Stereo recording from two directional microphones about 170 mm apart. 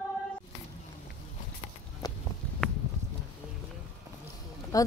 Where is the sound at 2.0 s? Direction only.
25° left (ahead or behind).